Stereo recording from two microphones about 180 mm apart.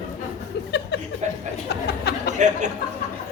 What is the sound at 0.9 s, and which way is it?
Chuckle, 70° left (ahead or behind).